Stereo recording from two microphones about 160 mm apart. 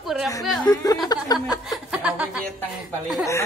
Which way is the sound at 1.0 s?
25° left (ahead or behind).